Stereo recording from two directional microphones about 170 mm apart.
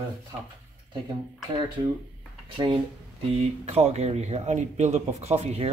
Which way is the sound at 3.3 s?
40° right (ahead or behind).